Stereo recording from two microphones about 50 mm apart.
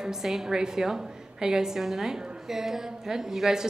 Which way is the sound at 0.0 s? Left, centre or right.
Centre.